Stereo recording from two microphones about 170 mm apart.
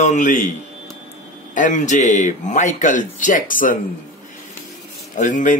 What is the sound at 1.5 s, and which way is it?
Speech, 50° left (ahead or behind).